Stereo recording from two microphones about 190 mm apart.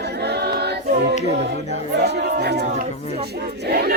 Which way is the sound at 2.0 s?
60° right (ahead or behind).